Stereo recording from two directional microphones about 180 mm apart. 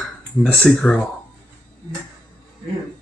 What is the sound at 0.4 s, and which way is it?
Speech, 5° left (ahead or behind).